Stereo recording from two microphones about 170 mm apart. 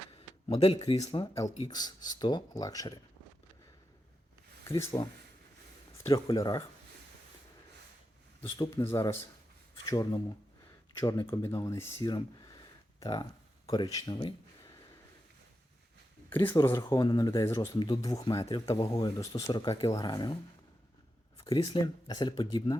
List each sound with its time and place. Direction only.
0.4 s speech: 30° left (ahead or behind)
1.0 s speech: 20° left (ahead or behind)
4.8 s speech: 15° left (ahead or behind)
8.5 s speech: 25° left (ahead or behind)
8.8 s speech: 15° left (ahead or behind)
12.0 s a sound: 25° left (ahead or behind)
13.7 s speech: 20° left (ahead or behind)
16.3 s speech: 15° left (ahead or behind)
21.5 s speech: 25° left (ahead or behind)